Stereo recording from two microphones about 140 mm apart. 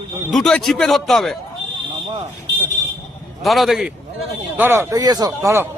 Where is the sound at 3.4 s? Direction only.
Centre (ahead or behind).